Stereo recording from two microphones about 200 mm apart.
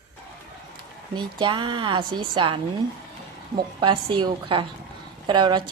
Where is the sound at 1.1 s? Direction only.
25° right (ahead or behind).